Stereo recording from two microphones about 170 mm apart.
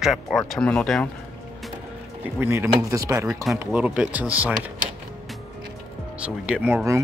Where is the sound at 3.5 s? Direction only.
10° right (ahead or behind).